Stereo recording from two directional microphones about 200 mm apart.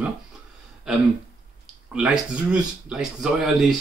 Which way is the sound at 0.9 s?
5° right (ahead or behind).